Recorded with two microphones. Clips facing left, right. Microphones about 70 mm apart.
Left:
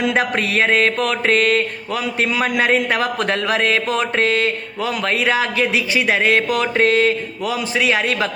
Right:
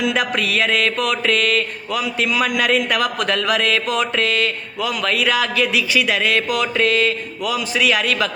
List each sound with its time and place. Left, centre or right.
0.0 s mantra: left